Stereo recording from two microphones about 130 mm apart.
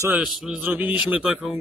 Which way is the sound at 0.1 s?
5° right (ahead or behind).